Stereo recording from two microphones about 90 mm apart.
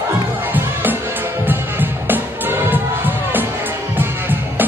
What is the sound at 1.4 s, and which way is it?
Music, 20° right (ahead or behind).